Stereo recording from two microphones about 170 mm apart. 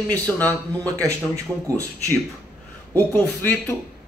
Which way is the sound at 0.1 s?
10° left (ahead or behind).